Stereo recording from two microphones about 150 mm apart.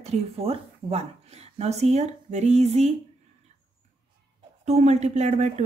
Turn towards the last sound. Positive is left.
turn(degrees=-45)  # may be behind; listen again after turning